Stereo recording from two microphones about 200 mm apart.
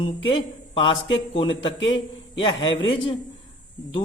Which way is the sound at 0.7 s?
25° left (ahead or behind).